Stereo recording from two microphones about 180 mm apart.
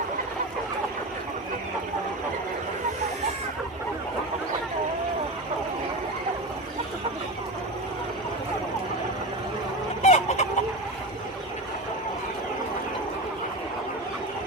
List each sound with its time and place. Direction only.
10.0 s chicken: 35° left (ahead or behind)